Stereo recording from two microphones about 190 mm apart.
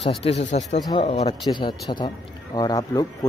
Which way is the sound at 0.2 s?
35° left (ahead or behind).